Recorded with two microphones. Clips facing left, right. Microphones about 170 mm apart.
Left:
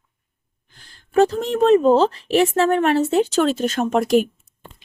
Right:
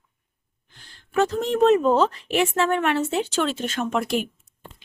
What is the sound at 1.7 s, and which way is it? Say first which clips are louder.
Speech: left 4 dB; 30° left (ahead or behind).